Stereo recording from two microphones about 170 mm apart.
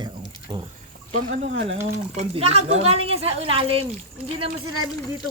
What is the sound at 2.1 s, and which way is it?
A woman's voice, 40° right (ahead or behind).